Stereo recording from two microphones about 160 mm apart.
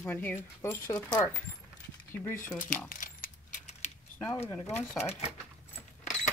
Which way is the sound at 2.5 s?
55° left (ahead or behind).